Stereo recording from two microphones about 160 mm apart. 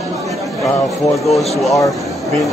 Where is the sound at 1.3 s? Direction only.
Centre (ahead or behind).